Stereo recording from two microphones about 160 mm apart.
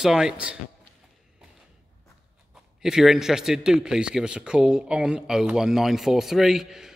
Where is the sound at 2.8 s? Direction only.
5° right (ahead or behind).